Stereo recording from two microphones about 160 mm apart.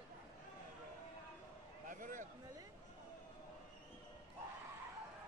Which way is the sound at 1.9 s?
55° right (ahead or behind).